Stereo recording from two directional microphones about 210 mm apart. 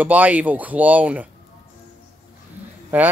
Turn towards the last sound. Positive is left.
turn(degrees=-5)  # may be behind; listen again after turning